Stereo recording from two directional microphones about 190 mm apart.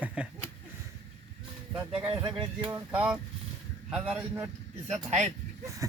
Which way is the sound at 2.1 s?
25° right (ahead or behind).